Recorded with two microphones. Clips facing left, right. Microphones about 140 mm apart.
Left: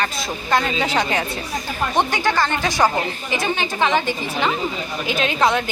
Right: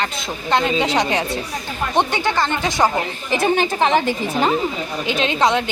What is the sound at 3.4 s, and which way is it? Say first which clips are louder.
A woman's voice: right 4 dB; 40° right (ahead or behind).